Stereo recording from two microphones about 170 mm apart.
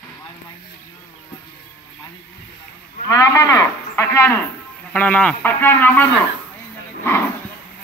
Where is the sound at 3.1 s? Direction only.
20° left (ahead or behind).